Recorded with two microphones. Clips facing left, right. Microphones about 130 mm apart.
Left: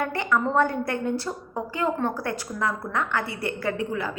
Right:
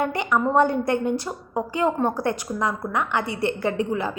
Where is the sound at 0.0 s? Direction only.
20° right (ahead or behind).